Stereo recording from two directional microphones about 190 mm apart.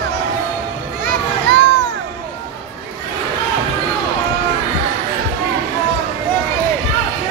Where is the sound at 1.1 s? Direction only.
55° right (ahead or behind).